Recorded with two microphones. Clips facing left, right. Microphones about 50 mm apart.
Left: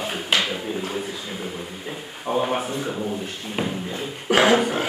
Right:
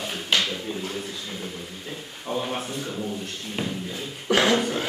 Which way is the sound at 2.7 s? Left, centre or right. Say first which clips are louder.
Left 4 dB; centre.